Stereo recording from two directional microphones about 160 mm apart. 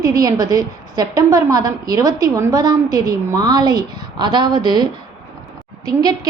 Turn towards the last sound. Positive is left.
turn(degrees=-25)  # may be behind; listen again after turning